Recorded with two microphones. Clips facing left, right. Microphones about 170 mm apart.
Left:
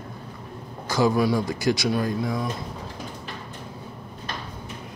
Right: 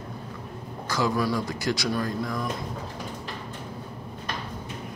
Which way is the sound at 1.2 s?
20° left (ahead or behind).